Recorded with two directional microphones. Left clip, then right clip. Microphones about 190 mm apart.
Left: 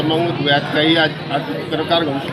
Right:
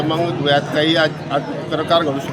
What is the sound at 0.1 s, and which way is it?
A man's voice, 20° right (ahead or behind).